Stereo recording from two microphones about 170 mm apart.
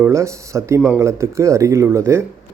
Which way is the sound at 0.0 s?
15° right (ahead or behind).